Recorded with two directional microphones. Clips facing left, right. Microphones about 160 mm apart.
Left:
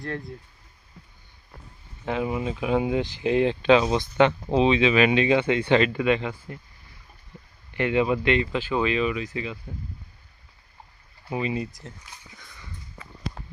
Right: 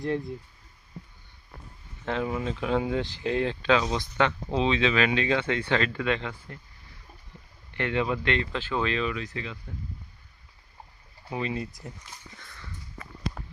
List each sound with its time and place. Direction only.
2.0 s speech: 10° left (ahead or behind)
7.7 s speech: 10° left (ahead or behind)
11.3 s speech: 5° left (ahead or behind)